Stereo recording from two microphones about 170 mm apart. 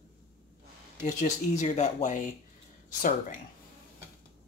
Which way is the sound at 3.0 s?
50° left (ahead or behind).